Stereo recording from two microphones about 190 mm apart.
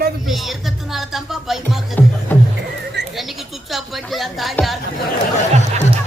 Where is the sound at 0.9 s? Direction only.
Centre (ahead or behind).